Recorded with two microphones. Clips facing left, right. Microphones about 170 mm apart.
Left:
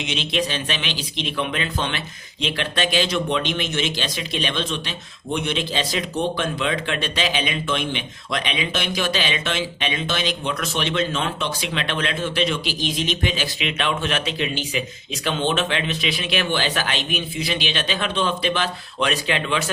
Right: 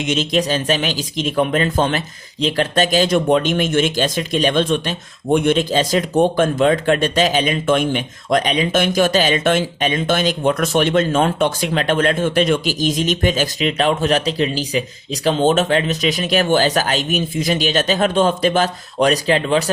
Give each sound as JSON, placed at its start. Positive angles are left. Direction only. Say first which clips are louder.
{"t": 0.0, "sound": "speech", "louder": "right 6 dB", "side_deg": -45}